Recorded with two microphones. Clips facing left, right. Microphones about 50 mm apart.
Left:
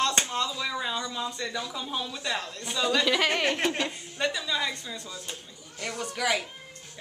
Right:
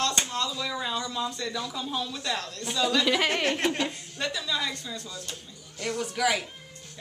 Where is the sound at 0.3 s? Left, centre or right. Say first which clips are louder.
Left 1 dB; centre.